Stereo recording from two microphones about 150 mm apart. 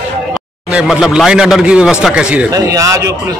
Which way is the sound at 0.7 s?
5° right (ahead or behind).